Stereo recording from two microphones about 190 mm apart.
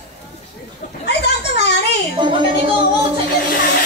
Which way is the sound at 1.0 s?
65° left (ahead or behind).